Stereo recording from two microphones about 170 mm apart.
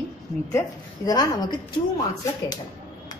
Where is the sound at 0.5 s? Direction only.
20° left (ahead or behind).